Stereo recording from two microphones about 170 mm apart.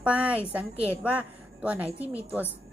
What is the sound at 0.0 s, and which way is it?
A woman's voice, 10° right (ahead or behind).